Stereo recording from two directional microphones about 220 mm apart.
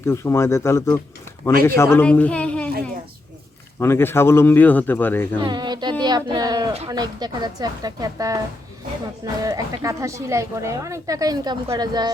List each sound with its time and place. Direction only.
0.0 s speech: 10° left (ahead or behind)
3.8 s speech: 10° left (ahead or behind)
5.4 s speech: 20° right (ahead or behind)
6.0 s a sound: 20° right (ahead or behind)
6.7 s a woman's voice: 20° right (ahead or behind)
9.4 s a woman's voice: 15° right (ahead or behind)